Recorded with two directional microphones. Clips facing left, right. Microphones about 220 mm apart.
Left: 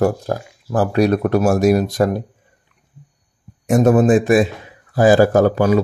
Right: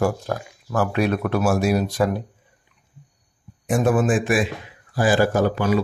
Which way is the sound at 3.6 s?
40° left (ahead or behind).